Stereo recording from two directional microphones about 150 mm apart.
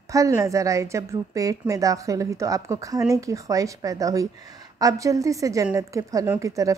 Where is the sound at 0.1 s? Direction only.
20° right (ahead or behind).